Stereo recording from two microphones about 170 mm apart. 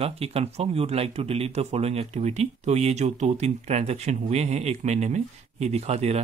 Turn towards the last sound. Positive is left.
turn(degrees=-40)  # may be behind; listen again after turning